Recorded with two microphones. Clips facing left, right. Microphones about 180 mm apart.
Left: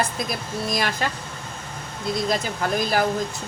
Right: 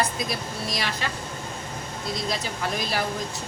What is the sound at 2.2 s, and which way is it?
Speech, 50° left (ahead or behind).